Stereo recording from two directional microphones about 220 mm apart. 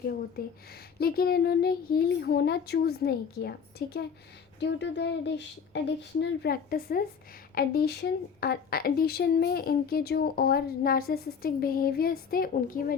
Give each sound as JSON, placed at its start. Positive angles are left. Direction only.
{"t": 0.3, "sound": "a woman's voice", "side_deg": 45}